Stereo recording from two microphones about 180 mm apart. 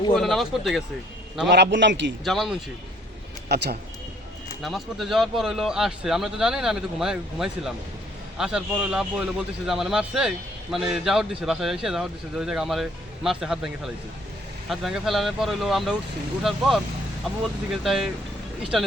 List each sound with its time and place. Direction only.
0.1 s a man's voice: centre (ahead or behind)
1.5 s a man's voice: 70° right (ahead or behind)
2.2 s a man's voice: centre (ahead or behind)
3.5 s a man's voice: 65° right (ahead or behind)
4.6 s a man's voice: centre (ahead or behind)